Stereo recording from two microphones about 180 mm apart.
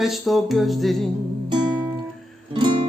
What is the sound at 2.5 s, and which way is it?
Music, 25° right (ahead or behind).